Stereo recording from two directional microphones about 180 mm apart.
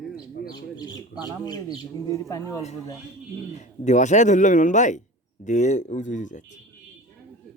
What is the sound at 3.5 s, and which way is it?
Speech, 40° left (ahead or behind).